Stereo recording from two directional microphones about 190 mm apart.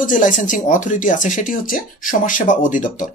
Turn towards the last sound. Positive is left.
turn(degrees=40)  # may be behind; listen again after turning